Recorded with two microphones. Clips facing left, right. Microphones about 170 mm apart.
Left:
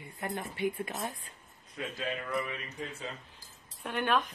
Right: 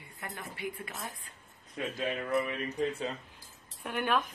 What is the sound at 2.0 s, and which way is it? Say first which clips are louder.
Speech: right 4 dB; 20° right (ahead or behind).